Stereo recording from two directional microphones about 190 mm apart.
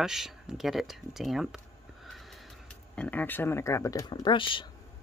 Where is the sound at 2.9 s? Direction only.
10° left (ahead or behind); by 4.6 s 25° left (ahead or behind).